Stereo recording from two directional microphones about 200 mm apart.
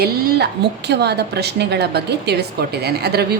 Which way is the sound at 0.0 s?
55° right (ahead or behind).